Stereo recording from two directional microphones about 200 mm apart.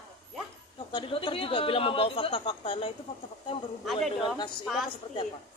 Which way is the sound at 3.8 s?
Centre (ahead or behind).